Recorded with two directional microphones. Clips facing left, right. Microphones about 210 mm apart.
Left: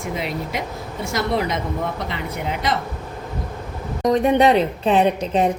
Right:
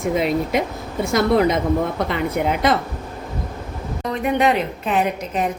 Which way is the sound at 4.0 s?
35° left (ahead or behind).